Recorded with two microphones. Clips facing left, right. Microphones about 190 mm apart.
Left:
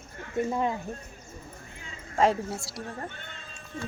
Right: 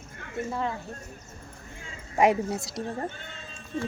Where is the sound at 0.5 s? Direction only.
15° left (ahead or behind).